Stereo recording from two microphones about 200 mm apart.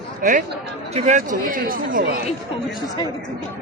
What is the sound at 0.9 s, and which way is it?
Speech, 35° right (ahead or behind).